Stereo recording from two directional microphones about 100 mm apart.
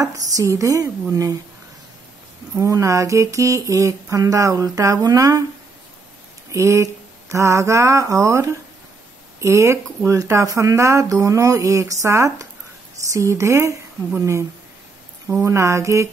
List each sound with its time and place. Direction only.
0.0 s speech: 35° right (ahead or behind)
2.5 s speech: 30° right (ahead or behind)
6.5 s speech: 30° right (ahead or behind)
15.4 s speech: 30° right (ahead or behind)